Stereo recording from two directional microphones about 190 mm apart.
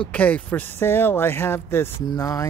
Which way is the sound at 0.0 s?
5° left (ahead or behind).